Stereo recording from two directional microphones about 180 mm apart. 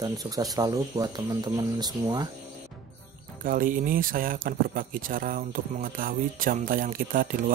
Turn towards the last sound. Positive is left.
turn(degrees=-50)  # may be behind; listen again after turning